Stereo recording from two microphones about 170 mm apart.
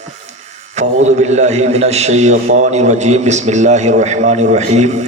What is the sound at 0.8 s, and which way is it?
A man's voice, 40° right (ahead or behind).